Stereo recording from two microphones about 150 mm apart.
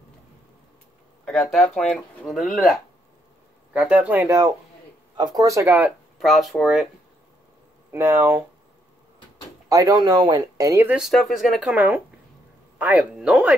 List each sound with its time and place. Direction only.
1.2 s speech: 5° left (ahead or behind); by 5.7 s 25° right (ahead or behind)
5.7 s speech: 10° right (ahead or behind)
6.1 s speech: centre (ahead or behind)
7.9 s speech: 15° right (ahead or behind)
9.7 s speech: 25° right (ahead or behind)
11.0 s speech: centre (ahead or behind)